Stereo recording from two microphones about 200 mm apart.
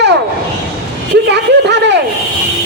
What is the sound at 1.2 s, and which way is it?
Speech, 60° right (ahead or behind).